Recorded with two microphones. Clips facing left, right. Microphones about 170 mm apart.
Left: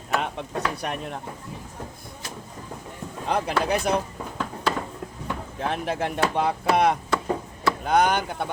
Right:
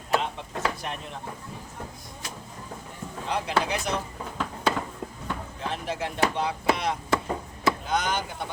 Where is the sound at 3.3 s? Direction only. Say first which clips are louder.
Left 3 dB; 55° left (ahead or behind).